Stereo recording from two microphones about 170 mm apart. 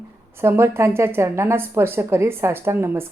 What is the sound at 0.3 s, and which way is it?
A woman's voice, 15° right (ahead or behind).